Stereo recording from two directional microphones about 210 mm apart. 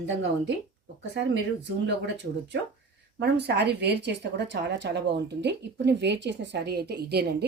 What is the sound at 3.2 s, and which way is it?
A woman's voice, 50° right (ahead or behind).